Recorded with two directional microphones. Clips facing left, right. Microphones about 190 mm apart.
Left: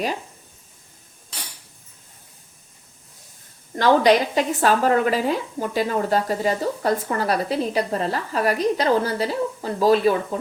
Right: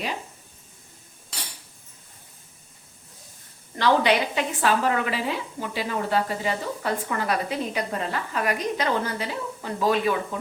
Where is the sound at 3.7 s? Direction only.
40° left (ahead or behind).